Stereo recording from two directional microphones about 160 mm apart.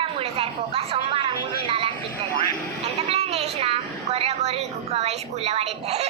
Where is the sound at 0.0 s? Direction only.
35° right (ahead or behind).